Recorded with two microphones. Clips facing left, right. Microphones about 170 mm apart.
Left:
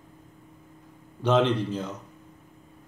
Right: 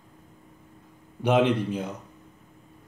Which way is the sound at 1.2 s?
15° right (ahead or behind).